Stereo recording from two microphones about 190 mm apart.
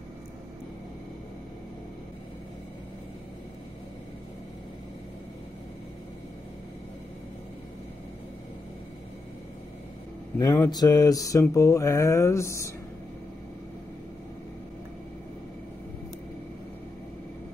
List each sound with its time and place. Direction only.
10.4 s speech: 20° left (ahead or behind)